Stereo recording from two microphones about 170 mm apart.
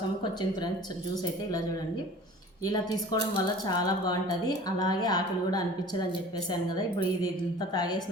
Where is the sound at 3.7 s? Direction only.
25° left (ahead or behind).